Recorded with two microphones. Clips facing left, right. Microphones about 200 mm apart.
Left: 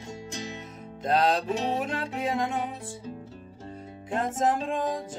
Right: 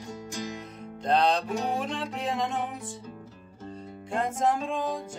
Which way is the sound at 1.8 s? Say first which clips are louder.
Left 2 dB; 5° left (ahead or behind).